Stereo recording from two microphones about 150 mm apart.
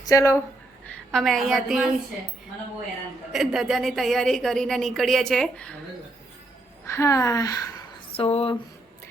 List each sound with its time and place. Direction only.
0.0 s speech: 20° left (ahead or behind)
0.9 s a woman's voice: 5° left (ahead or behind)
3.3 s a woman's voice: centre (ahead or behind)
6.8 s a woman's voice: 20° left (ahead or behind)
8.1 s speech: 40° left (ahead or behind)